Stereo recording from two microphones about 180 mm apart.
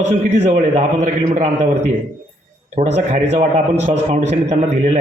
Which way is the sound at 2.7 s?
35° right (ahead or behind).